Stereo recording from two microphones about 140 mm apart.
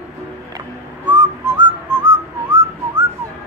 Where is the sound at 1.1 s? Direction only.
35° right (ahead or behind).